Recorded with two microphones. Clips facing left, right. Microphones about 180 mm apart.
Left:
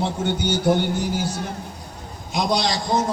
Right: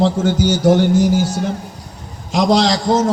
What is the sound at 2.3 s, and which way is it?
Speech, 80° right.